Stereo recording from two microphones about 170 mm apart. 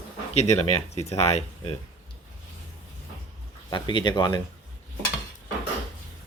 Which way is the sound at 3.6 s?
25° left (ahead or behind).